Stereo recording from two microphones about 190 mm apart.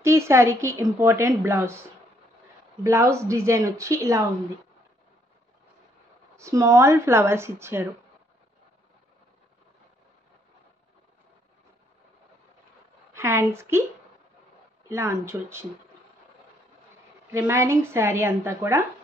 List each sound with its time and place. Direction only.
0.0 s a woman's voice: 15° right (ahead or behind)
6.3 s a woman's voice: 15° right (ahead or behind)
13.1 s a woman's voice: 15° right (ahead or behind)
14.9 s a woman's voice: 15° right (ahead or behind)
17.3 s a woman's voice: 15° right (ahead or behind)